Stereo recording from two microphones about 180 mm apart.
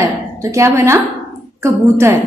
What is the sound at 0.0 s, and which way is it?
A woman's voice, 15° right (ahead or behind).